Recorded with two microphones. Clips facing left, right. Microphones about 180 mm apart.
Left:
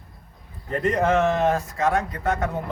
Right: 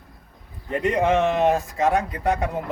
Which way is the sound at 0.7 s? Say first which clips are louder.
Right 1 dB; 10° right (ahead or behind).